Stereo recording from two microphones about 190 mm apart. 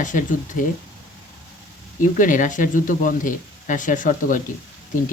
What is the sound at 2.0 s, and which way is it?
Speech, 45° left (ahead or behind).